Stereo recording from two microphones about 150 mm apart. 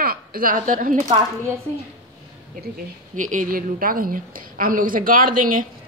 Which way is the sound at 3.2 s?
60° right (ahead or behind).